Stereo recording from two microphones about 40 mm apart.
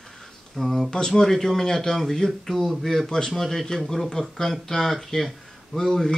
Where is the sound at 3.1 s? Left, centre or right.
Centre.